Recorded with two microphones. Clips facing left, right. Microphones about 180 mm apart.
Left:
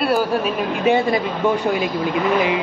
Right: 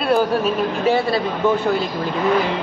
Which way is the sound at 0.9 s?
15° left (ahead or behind).